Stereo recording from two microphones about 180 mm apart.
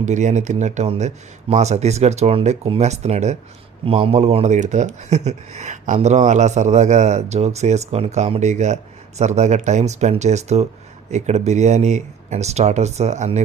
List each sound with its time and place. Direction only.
0.0 s speech: 40° right (ahead or behind)